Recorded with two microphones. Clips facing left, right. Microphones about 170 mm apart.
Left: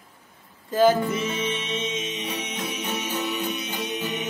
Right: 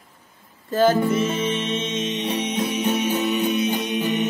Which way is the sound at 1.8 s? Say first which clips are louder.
Right 5 dB; 10° left (ahead or behind).